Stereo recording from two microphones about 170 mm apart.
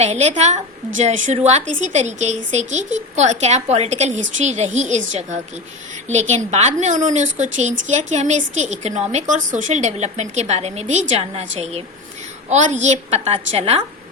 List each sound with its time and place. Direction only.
0.0 s a woman's voice: 40° right (ahead or behind)
12.5 s a woman's voice: 45° right (ahead or behind)